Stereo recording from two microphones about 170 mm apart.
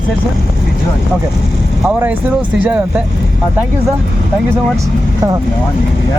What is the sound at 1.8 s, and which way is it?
Speech, 5° right (ahead or behind).